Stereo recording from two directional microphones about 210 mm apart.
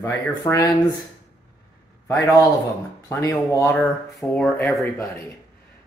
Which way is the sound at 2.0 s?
15° left (ahead or behind).